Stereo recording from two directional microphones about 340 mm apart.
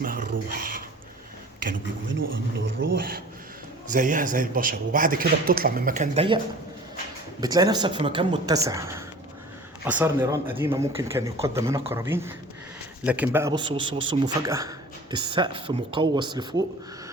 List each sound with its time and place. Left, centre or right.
0.0 s a man's voice: right
7.4 s a man's voice: centre